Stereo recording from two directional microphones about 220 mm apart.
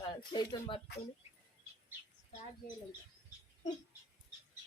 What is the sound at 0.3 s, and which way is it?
Speech, 20° left (ahead or behind).